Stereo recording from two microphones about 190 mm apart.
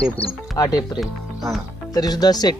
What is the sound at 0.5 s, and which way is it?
Speech, 20° left (ahead or behind).